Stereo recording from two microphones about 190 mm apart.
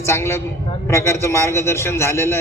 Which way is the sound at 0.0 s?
15° left (ahead or behind).